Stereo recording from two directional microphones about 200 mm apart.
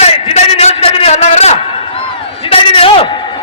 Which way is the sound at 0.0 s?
30° left (ahead or behind).